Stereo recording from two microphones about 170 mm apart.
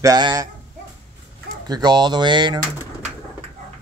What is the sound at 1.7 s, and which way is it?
Speech, 25° right (ahead or behind).